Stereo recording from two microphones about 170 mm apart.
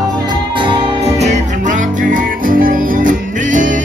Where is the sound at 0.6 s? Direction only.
30° right (ahead or behind).